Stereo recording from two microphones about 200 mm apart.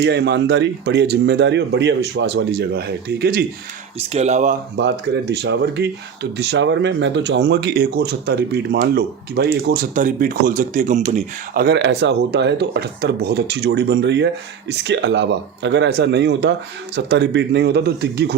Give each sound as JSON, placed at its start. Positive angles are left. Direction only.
{"t": 0.0, "sound": "speech", "side_deg": -55}
{"t": 4.1, "sound": "speech", "side_deg": -35}
{"t": 4.8, "sound": "speech", "side_deg": -60}
{"t": 11.6, "sound": "speech", "side_deg": -60}